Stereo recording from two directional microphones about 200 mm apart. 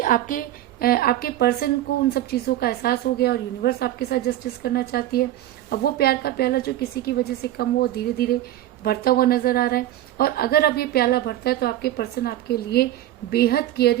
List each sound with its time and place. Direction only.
0.0 s a woman's voice: 40° left (ahead or behind)